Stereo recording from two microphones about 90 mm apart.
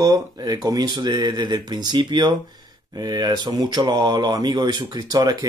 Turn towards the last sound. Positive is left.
turn(degrees=-45)  # may be behind; listen again after turning